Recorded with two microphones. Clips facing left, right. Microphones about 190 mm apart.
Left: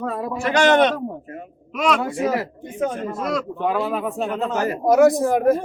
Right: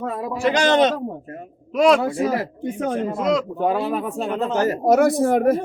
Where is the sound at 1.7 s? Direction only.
35° right (ahead or behind).